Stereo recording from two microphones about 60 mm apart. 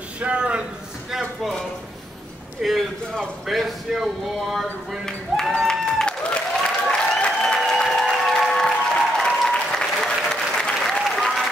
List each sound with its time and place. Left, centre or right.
0.2 s a man's voice: centre
1.1 s a man's voice: centre
2.6 s a man's voice: centre
5.0 s speech: centre
5.7 s applause: centre